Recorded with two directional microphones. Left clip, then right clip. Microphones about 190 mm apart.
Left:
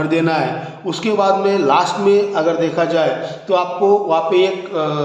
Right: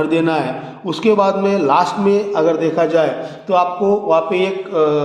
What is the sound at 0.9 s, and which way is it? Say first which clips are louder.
Mantra: right 1 dB; 40° right (ahead or behind).